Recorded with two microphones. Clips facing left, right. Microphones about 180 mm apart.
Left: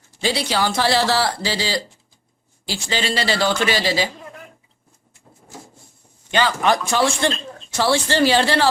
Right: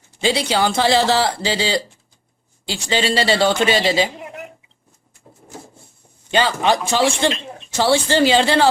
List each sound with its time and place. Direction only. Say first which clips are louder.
0.3 s speech: right 3 dB; 25° right (ahead or behind)
6.3 s speech: right 1 dB; 25° right (ahead or behind)